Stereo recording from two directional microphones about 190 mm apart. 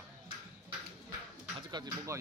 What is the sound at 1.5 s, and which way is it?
Speech, 25° right (ahead or behind).